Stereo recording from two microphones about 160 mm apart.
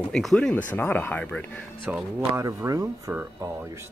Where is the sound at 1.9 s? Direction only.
10° right (ahead or behind).